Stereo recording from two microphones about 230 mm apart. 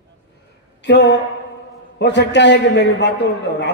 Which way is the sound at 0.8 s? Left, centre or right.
Left.